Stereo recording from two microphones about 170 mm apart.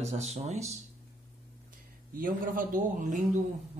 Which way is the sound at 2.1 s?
55° right (ahead or behind).